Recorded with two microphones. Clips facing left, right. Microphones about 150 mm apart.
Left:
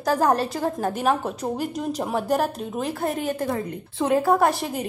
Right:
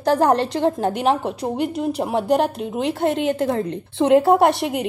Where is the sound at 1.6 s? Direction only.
65° right (ahead or behind).